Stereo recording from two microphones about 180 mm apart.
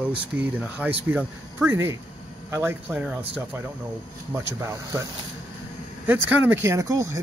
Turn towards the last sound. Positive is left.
turn(degrees=-15)  # may be behind; listen again after turning